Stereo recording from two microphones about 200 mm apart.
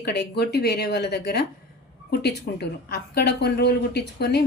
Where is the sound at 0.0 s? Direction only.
55° left (ahead or behind).